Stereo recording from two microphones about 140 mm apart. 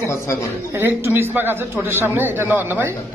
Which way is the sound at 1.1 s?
15° right (ahead or behind).